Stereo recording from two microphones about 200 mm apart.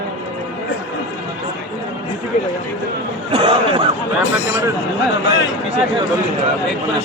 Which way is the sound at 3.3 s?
25° right (ahead or behind).